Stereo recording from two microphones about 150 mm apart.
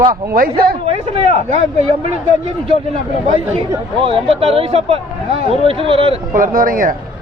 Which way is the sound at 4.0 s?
40° right (ahead or behind).